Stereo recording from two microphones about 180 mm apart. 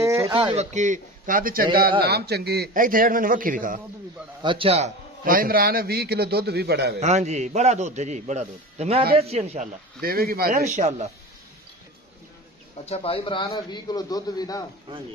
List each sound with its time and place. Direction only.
0.0 s a sound: 15° right (ahead or behind)
0.3 s speech: 30° right (ahead or behind)
0.7 s a man's voice: 45° right (ahead or behind)
2.0 s a man's voice: 60° right (ahead or behind)
4.4 s a man's voice: 30° right (ahead or behind)
5.2 s a man's voice: 55° right (ahead or behind)
7.0 s a man's voice: 40° right (ahead or behind)
10.0 s a man's voice: 55° right (ahead or behind)
10.6 s a man's voice: 40° right (ahead or behind)
12.7 s a man's voice: 35° left (ahead or behind)